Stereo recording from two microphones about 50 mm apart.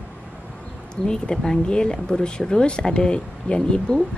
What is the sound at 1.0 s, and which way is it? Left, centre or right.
Speech, centre.